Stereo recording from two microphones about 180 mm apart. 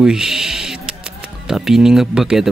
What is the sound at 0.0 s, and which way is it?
Music, 5° right (ahead or behind).